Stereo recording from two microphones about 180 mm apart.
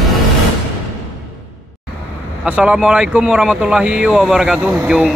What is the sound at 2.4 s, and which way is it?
Speech, 5° right (ahead or behind).